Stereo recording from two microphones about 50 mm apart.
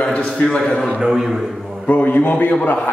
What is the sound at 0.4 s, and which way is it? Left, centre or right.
Speech, centre.